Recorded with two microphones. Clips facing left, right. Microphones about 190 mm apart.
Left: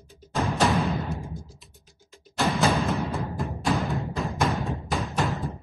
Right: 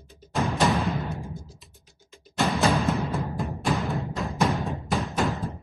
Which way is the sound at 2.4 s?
Centre (ahead or behind).